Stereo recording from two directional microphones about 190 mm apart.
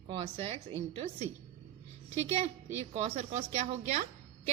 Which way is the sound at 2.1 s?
35° right (ahead or behind).